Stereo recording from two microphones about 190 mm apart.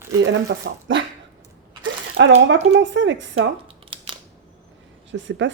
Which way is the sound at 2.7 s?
75° right (ahead or behind).